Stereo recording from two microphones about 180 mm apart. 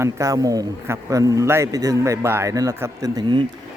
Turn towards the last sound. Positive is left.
turn(degrees=-25)  # may be behind; listen again after turning